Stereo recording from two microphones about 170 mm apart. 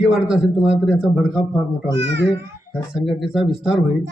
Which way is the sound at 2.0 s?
90° right.